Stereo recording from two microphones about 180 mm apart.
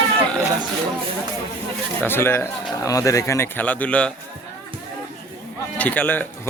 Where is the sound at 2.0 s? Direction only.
15° left (ahead or behind).